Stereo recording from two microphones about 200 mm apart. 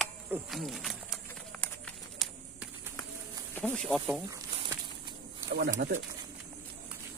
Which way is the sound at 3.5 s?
5° left (ahead or behind).